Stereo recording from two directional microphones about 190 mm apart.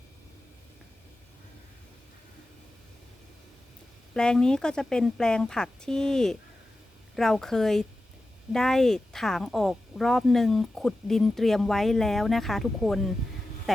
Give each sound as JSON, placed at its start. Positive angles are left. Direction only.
{"t": 4.1, "sound": "speech", "side_deg": 5}